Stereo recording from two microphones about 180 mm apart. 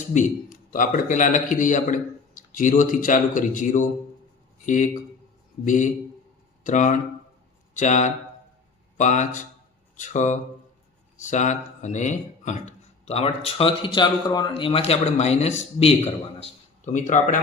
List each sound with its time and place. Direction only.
0.1 s a man's voice: 45° left (ahead or behind)